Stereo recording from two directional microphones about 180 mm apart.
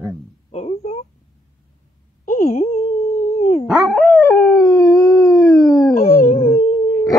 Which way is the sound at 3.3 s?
35° left (ahead or behind).